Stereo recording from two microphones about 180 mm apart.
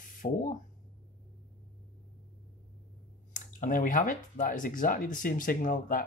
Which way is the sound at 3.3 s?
50° left (ahead or behind).